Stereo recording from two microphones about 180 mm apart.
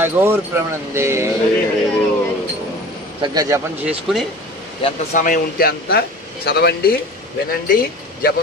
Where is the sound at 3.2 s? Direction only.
20° right (ahead or behind).